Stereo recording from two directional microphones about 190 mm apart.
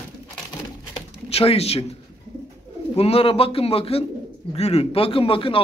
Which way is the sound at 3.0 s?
30° left (ahead or behind).